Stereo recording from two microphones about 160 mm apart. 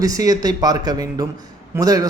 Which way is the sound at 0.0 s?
20° right (ahead or behind).